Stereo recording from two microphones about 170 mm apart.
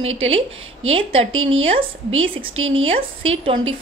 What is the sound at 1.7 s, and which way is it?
A woman's voice, 30° right (ahead or behind).